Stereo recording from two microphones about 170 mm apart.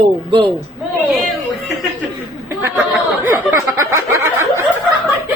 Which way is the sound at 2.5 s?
15° right (ahead or behind).